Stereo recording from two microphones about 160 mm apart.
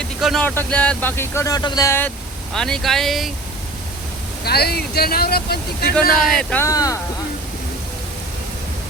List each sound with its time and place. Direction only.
0.0 s a sound: centre (ahead or behind)
0.4 s speech: 10° left (ahead or behind)
2.5 s speech: 5° left (ahead or behind)
4.4 s speech: 80° left
6.3 s speech: 10° left (ahead or behind)
6.7 s speech: 20° left (ahead or behind)